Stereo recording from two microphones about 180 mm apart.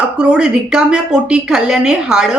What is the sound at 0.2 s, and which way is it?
A woman's voice, 5° right (ahead or behind).